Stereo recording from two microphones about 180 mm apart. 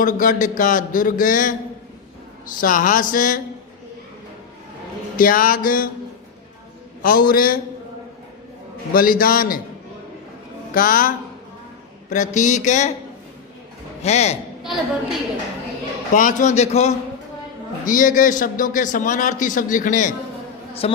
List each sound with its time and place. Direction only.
0.0 s a man's voice: 50° left (ahead or behind)
2.6 s a man's voice: 50° left (ahead or behind)
5.1 s a man's voice: 50° left (ahead or behind)
7.0 s a man's voice: 55° left (ahead or behind)
8.9 s a man's voice: 50° left (ahead or behind)
10.8 s a man's voice: 50° left (ahead or behind)
14.0 s a man's voice: 35° left (ahead or behind)
16.1 s a man's voice: 45° left (ahead or behind)
20.8 s a man's voice: 35° left (ahead or behind)